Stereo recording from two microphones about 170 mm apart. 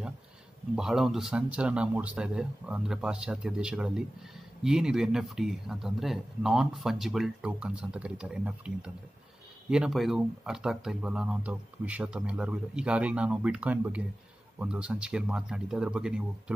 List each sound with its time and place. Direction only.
0.7 s speech: centre (ahead or behind)